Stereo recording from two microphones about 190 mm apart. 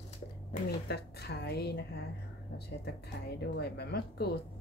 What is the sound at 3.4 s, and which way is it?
A woman's voice, 60° left (ahead or behind).